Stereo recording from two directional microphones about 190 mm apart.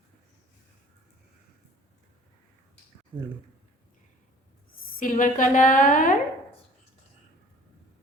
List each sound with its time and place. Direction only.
4.9 s a woman's voice: 45° left (ahead or behind)